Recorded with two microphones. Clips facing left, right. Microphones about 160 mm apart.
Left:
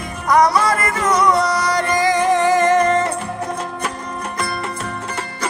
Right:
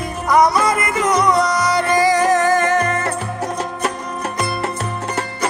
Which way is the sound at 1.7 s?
5° right (ahead or behind).